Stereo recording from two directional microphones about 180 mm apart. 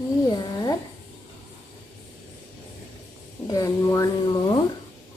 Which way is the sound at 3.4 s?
20° left (ahead or behind).